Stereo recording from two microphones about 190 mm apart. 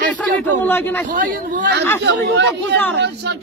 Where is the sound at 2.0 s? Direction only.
70° right (ahead or behind).